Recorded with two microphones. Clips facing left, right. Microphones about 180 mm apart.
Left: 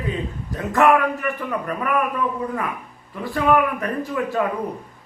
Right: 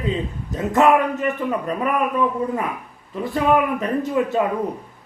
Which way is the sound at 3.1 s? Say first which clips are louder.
Right 1 dB; 20° right (ahead or behind).